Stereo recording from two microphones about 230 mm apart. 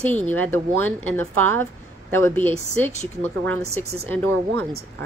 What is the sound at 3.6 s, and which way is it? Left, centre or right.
Speech, right.